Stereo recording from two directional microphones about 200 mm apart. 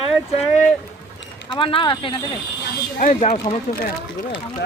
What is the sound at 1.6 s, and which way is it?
Speech, 25° left (ahead or behind).